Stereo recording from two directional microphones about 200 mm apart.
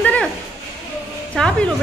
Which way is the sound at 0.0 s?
5° left (ahead or behind).